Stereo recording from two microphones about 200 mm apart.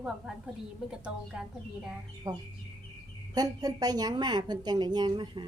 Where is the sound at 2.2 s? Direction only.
20° right (ahead or behind).